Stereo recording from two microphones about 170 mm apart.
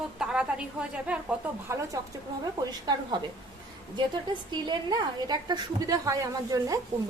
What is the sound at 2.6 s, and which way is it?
A woman's voice, 25° right (ahead or behind).